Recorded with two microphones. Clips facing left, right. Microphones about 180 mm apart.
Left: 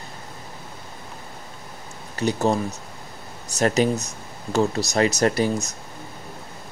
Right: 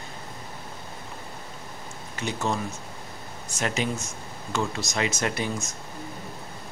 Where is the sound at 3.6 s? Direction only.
40° left (ahead or behind).